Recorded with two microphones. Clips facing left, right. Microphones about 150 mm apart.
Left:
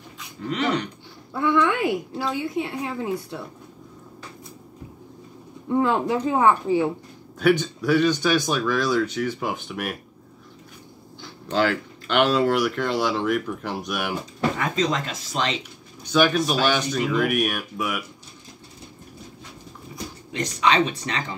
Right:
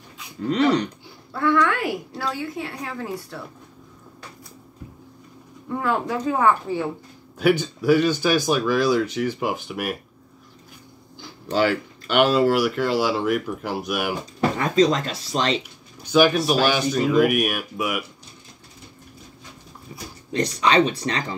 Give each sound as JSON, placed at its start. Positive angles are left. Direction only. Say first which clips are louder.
{"t": 0.4, "sound": "speech", "louder": "right 5 dB", "side_deg": -35}
{"t": 1.3, "sound": "speech", "louder": "even", "side_deg": 15}
{"t": 5.7, "sound": "speech", "louder": "left 3 dB", "side_deg": 20}
{"t": 7.3, "sound": "speech", "louder": "even", "side_deg": -10}
{"t": 11.5, "sound": "speech", "louder": "right 1 dB", "side_deg": -5}
{"t": 14.6, "sound": "speech", "louder": "right 9 dB", "side_deg": -35}
{"t": 16.0, "sound": "speech", "louder": "right 2 dB", "side_deg": -10}
{"t": 20.3, "sound": "speech", "louder": "right 2 dB", "side_deg": -35}